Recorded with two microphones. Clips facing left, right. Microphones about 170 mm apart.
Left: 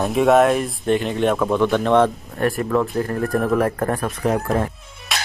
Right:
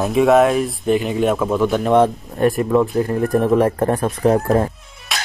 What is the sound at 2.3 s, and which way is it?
Speech, 20° right (ahead or behind).